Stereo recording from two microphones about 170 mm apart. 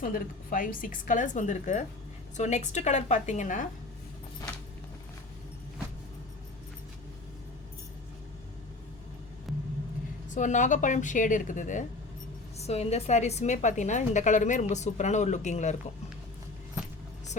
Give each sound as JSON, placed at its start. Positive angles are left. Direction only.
{"t": 0.0, "sound": "a woman's voice", "side_deg": 55}
{"t": 10.2, "sound": "a woman's voice", "side_deg": 45}